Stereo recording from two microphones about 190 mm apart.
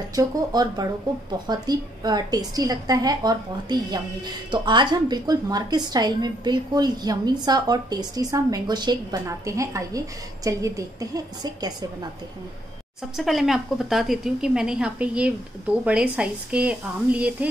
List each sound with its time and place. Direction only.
0.1 s a woman's voice: 20° right (ahead or behind)
13.1 s a woman's voice: centre (ahead or behind)